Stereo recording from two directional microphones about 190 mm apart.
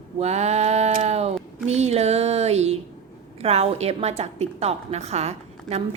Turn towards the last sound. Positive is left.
turn(degrees=-35)  # may be behind; listen again after turning